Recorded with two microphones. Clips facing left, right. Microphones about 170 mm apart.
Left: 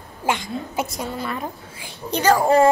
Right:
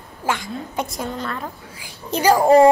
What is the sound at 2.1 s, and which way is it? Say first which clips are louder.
Speech: right 3 dB; 10° right (ahead or behind).